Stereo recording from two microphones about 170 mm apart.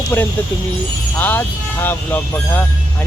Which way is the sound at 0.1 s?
15° left (ahead or behind).